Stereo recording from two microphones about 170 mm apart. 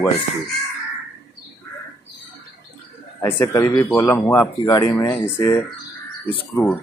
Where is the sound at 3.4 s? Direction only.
20° left (ahead or behind).